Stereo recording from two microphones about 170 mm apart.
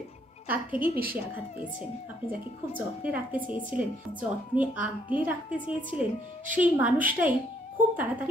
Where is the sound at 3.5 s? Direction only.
30° left (ahead or behind).